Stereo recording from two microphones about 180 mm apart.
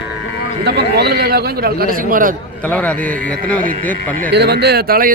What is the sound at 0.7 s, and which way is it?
A man's voice, 65° right (ahead or behind).